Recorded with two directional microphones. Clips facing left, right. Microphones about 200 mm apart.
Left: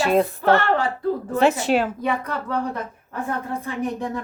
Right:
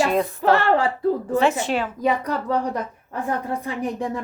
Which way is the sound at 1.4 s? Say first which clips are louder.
Left 5 dB; 40° left (ahead or behind).